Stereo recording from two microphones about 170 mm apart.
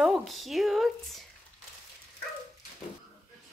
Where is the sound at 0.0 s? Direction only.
Centre (ahead or behind).